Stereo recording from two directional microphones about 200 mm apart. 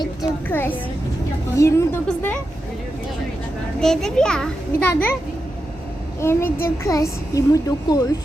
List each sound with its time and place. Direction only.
0.4 s a woman's voice: 10° left (ahead or behind)
3.8 s a child's voice: 5° left (ahead or behind)
6.1 s a woman's voice: 10° left (ahead or behind)